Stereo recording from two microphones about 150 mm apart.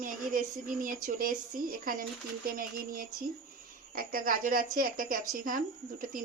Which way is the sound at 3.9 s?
70° right (ahead or behind).